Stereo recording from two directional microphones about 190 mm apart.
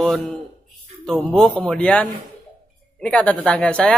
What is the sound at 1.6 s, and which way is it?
Speech, 5° left (ahead or behind).